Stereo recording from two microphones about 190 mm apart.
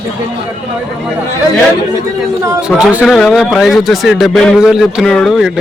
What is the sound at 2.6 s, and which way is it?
A man's voice, 5° right (ahead or behind).